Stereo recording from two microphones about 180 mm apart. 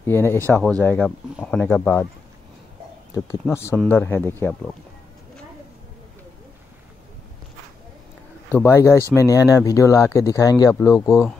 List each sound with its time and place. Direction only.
0.0 s speech: 15° left (ahead or behind)
3.4 s speech: 10° left (ahead or behind)
8.5 s speech: 10° left (ahead or behind)